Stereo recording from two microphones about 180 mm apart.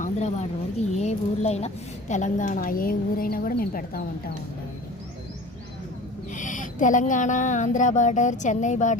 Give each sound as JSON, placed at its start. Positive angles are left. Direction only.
{"t": 0.0, "sound": "speech", "side_deg": 40}
{"t": 6.3, "sound": "speech", "side_deg": 45}